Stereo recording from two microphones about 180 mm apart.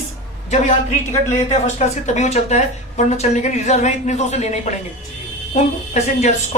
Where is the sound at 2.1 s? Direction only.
40° left (ahead or behind).